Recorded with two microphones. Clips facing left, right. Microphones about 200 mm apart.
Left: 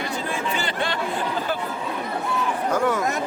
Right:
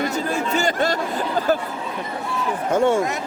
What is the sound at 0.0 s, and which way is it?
Chatter, 45° right (ahead or behind).